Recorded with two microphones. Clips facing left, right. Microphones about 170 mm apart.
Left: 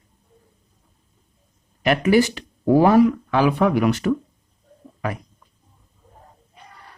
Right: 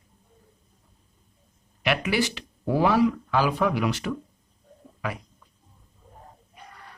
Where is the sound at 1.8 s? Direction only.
45° left (ahead or behind).